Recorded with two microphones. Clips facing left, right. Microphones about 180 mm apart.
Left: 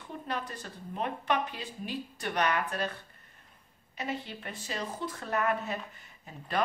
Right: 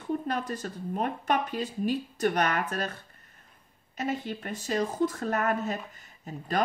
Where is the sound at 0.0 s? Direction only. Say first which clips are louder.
Right 7 dB; 45° right (ahead or behind).